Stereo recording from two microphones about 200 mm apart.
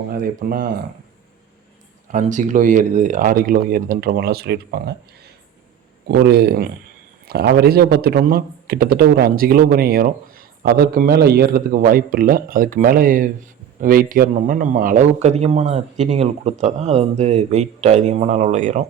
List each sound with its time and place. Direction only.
0.1 s speech: 45° right (ahead or behind)
2.1 s speech: 40° right (ahead or behind)
6.1 s a man's voice: 55° right (ahead or behind); by 18.9 s 35° right (ahead or behind)